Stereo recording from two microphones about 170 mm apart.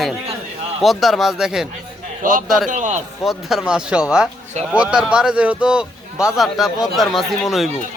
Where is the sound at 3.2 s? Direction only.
Centre (ahead or behind).